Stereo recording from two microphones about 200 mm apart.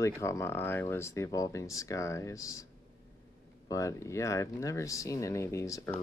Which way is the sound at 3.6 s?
15° left (ahead or behind).